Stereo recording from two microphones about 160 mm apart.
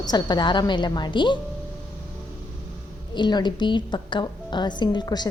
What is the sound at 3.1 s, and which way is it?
A woman's voice, 30° left (ahead or behind).